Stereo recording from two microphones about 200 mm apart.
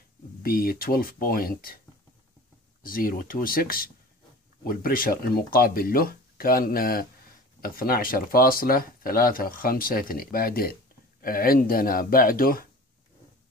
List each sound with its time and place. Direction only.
0.4 s speech: 45° left (ahead or behind)
2.8 s speech: 45° left (ahead or behind)